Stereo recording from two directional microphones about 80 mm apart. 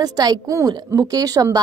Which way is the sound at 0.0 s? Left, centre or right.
Right.